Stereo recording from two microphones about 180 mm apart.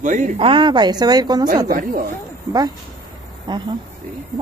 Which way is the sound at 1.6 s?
50° right (ahead or behind).